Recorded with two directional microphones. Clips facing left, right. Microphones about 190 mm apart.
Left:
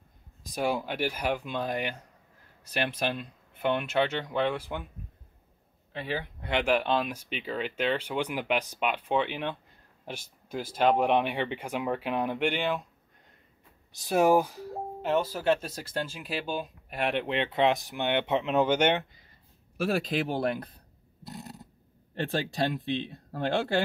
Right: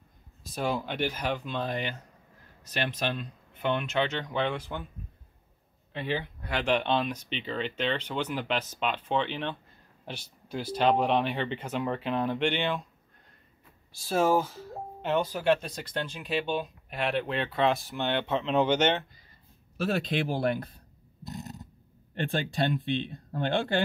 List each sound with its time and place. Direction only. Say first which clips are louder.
0.4 s speech: left 1 dB; 15° left (ahead or behind)
5.9 s speech: right 2 dB; 5° left (ahead or behind)
13.9 s speech: left 2 dB; 20° left (ahead or behind)
15.0 s speech: even; 5° left (ahead or behind)
17.0 s speech: left 1 dB; 20° left (ahead or behind); by 20.5 s centre (ahead or behind)
22.3 s speech: right 1 dB; centre (ahead or behind)